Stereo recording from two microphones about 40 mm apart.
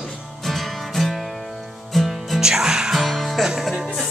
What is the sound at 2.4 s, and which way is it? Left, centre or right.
Music, centre.